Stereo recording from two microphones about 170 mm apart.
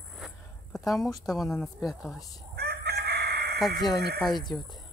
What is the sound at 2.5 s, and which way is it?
Chicken, 70° right (ahead or behind).